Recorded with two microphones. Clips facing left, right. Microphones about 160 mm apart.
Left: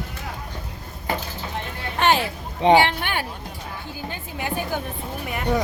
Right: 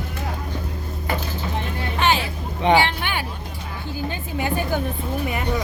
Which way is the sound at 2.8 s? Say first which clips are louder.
Left 1 dB; 45° left (ahead or behind).